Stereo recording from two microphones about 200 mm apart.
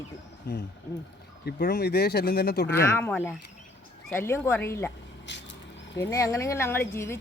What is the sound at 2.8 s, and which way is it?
Speech, 10° left (ahead or behind).